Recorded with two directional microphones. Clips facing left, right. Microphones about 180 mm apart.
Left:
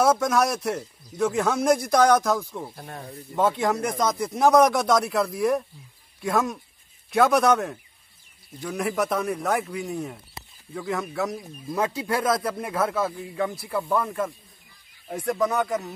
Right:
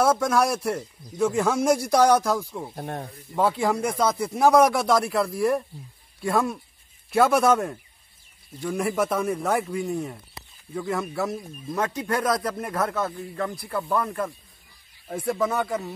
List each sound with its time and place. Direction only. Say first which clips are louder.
0.2 s speech: even; 5° right (ahead or behind)
2.7 s speech: right 6 dB; 45° right (ahead or behind)
3.3 s speech: even; centre (ahead or behind)
11.7 s speech: left 1 dB; 10° left (ahead or behind)